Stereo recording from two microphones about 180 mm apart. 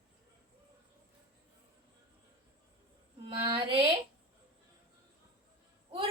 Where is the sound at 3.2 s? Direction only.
30° right (ahead or behind).